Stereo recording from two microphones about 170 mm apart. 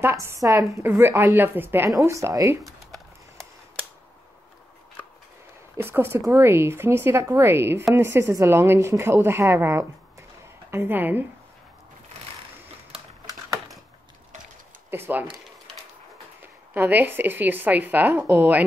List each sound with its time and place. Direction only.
0.0 s a woman's voice: 15° right (ahead or behind)
2.6 s a sound: centre (ahead or behind)
5.8 s a woman's voice: 15° right (ahead or behind)
14.9 s speech: 10° right (ahead or behind)
16.7 s a woman's voice: 10° right (ahead or behind)